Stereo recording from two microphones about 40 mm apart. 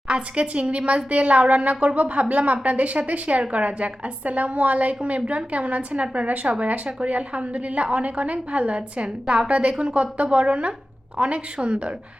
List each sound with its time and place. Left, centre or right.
0.1 s a woman's voice: right